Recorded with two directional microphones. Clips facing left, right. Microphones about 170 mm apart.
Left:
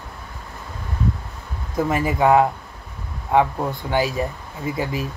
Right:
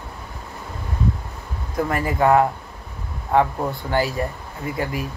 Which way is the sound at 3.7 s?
20° left (ahead or behind).